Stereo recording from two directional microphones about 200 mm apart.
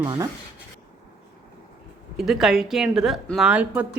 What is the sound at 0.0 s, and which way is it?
Speech, 20° right (ahead or behind).